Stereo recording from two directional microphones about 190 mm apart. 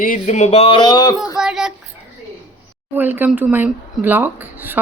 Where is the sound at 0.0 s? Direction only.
40° left (ahead or behind); by 1.4 s 20° left (ahead or behind).